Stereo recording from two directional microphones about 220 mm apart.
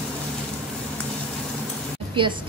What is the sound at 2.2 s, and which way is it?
Speech, 20° right (ahead or behind).